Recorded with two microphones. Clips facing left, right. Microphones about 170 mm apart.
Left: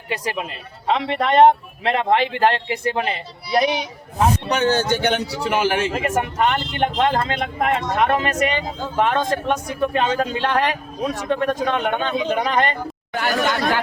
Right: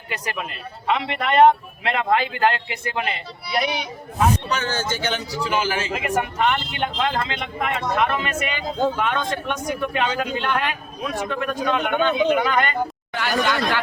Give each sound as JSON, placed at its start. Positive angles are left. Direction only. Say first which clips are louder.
{"t": 0.9, "sound": "speech", "louder": "left 3 dB", "side_deg": 30}
{"t": 4.7, "sound": "speech", "louder": "left 6 dB", "side_deg": 60}
{"t": 5.9, "sound": "speech", "louder": "left 2 dB", "side_deg": 45}
{"t": 13.1, "sound": "speech", "louder": "left 1 dB", "side_deg": 45}